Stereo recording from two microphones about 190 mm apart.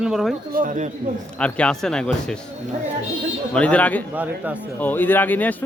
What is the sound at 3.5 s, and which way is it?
Speech, 5° left (ahead or behind).